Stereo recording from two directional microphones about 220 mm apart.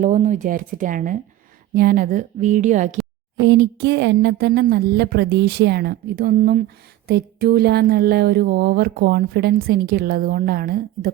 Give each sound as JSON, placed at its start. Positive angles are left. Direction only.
{"t": 0.0, "sound": "a woman's voice", "side_deg": -35}
{"t": 3.4, "sound": "speech", "side_deg": -45}